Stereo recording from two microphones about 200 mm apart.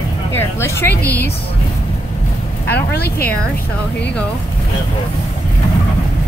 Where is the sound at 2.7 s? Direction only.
50° left (ahead or behind).